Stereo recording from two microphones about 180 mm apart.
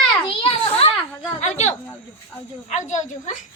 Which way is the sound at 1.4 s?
40° left (ahead or behind).